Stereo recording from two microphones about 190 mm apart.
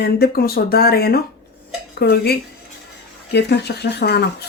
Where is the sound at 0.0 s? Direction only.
55° left (ahead or behind).